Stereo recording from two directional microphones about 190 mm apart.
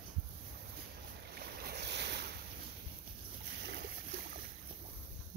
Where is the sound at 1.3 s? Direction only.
55° right (ahead or behind).